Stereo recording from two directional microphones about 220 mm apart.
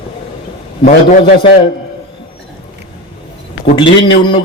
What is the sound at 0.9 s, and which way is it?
Speech, 20° left (ahead or behind).